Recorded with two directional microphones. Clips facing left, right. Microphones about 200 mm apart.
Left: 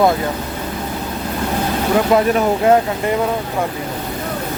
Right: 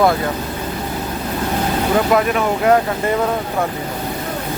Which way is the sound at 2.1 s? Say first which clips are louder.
Left 2 dB; 25° left (ahead or behind).